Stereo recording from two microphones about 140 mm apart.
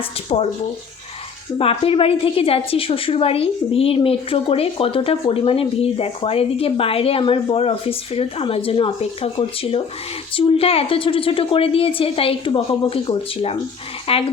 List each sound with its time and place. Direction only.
0.3 s a woman's voice: 40° left (ahead or behind)
1.5 s a woman's voice: 40° left (ahead or behind)